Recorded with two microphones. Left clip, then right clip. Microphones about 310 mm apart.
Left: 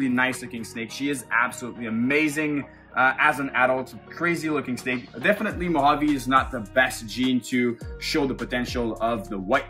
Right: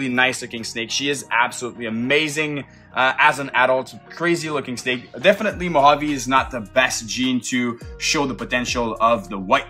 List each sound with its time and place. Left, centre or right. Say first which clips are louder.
0.0 s speech: right 5 dB; right
3.0 s a man's voice: right 4 dB; right